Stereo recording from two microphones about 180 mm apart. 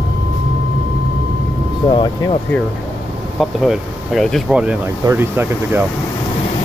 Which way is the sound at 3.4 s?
Centre (ahead or behind).